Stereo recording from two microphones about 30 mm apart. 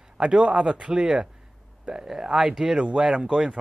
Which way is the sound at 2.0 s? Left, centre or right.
Centre.